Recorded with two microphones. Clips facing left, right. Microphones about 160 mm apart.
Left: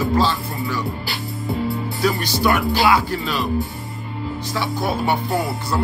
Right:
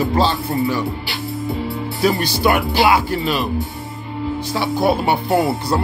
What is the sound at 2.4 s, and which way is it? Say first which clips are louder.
Speech: right 2 dB; 25° right (ahead or behind).